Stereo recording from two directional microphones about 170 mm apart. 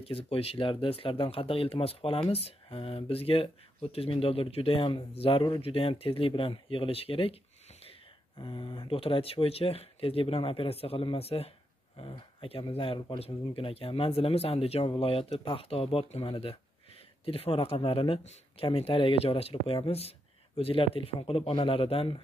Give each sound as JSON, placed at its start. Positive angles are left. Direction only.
{"t": 0.0, "sound": "speech", "side_deg": 35}
{"t": 8.4, "sound": "speech", "side_deg": 30}